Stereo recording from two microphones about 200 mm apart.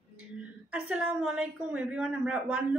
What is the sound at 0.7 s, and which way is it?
A woman's voice, 5° right (ahead or behind).